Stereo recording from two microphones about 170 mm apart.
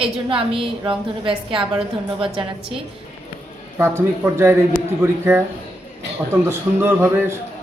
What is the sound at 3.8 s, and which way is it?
Speech, 15° right (ahead or behind).